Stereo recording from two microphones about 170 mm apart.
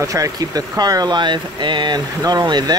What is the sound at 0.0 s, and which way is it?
Speech, 20° right (ahead or behind).